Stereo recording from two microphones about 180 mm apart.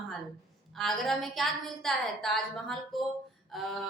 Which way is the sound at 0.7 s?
Centre (ahead or behind).